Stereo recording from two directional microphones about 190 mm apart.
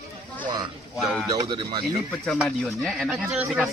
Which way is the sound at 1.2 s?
20° right (ahead or behind).